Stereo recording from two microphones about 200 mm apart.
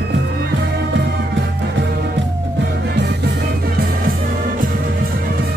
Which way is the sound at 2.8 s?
55° right (ahead or behind).